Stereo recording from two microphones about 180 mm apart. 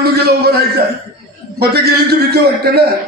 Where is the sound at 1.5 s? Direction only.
60° right (ahead or behind).